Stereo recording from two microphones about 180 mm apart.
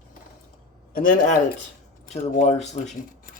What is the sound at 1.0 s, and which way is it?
Speech, 45° left (ahead or behind).